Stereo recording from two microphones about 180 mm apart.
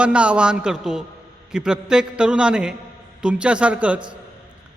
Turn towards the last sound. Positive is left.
turn(degrees=-5)  # may be behind; listen again after turning